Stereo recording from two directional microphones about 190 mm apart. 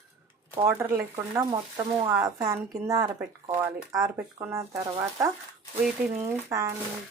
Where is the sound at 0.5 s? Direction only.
15° right (ahead or behind).